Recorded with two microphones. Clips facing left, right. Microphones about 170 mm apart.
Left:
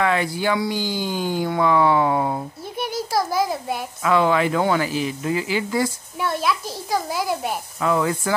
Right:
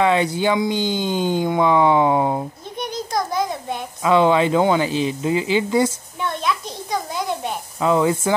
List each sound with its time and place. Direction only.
0.0 s speech: 20° right (ahead or behind)
2.8 s a sound: 5° left (ahead or behind)
4.0 s speech: 20° right (ahead or behind)
6.2 s a child's voice: 5° left (ahead or behind)
7.8 s speech: 20° right (ahead or behind)